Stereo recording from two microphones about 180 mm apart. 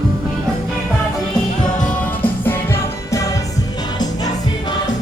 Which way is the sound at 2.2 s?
15° left (ahead or behind).